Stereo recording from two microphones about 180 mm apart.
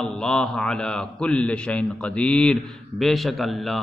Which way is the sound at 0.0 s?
5° left (ahead or behind).